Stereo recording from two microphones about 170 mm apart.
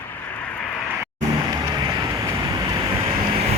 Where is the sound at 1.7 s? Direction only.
25° right (ahead or behind).